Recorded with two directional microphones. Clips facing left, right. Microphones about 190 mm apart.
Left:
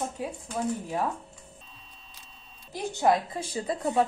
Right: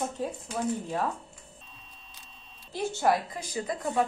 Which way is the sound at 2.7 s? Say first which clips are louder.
Left 2 dB; 15° left (ahead or behind).